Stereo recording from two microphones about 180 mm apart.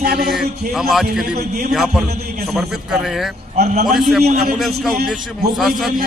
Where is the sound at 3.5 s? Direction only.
40° right (ahead or behind).